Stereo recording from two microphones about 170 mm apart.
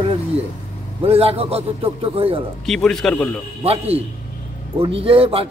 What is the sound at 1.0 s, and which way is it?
A man's voice, 35° right (ahead or behind).